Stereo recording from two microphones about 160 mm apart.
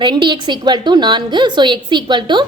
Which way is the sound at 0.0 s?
30° right (ahead or behind).